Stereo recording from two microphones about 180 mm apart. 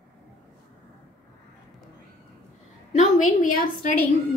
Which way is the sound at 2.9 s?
45° left (ahead or behind).